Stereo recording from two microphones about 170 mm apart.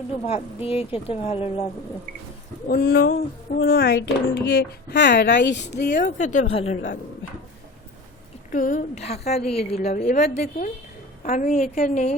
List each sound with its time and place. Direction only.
0.3 s a woman's voice: 35° left (ahead or behind)
2.6 s a sound: 60° left (ahead or behind)
3.6 s speech: 65° left (ahead or behind)
6.0 s a woman's voice: 45° left (ahead or behind)
8.5 s a woman's voice: 50° left (ahead or behind)